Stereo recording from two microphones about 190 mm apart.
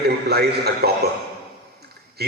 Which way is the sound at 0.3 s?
55° right (ahead or behind).